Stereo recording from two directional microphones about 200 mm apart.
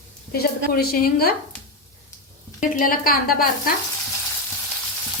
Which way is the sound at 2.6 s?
40° left (ahead or behind).